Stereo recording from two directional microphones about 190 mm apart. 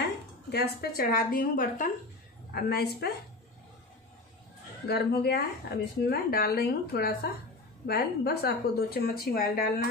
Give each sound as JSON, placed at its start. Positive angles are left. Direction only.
{"t": 0.0, "sound": "a woman's voice", "side_deg": 55}
{"t": 4.8, "sound": "a woman's voice", "side_deg": 55}